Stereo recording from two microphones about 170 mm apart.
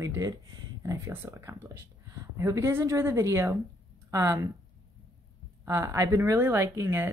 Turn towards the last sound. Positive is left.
turn(degrees=-15)  # may be behind; listen again after turning